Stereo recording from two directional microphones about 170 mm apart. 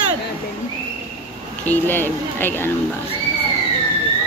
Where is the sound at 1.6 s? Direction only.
10° left (ahead or behind).